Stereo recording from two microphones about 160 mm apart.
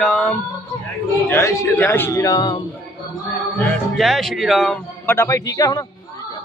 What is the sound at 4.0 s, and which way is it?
Speech, centre (ahead or behind).